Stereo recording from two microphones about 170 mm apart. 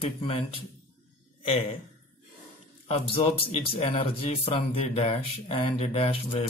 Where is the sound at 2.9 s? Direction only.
30° left (ahead or behind).